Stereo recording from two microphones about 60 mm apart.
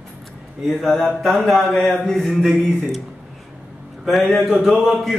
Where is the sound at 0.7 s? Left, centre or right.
Centre.